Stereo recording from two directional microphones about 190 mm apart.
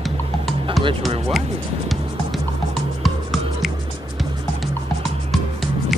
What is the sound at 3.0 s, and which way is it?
Music, centre (ahead or behind).